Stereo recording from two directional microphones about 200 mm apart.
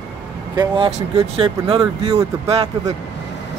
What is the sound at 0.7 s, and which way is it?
Speech, 25° right (ahead or behind).